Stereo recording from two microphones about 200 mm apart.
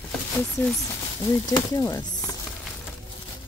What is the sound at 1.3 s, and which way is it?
A woman's voice, 15° left (ahead or behind).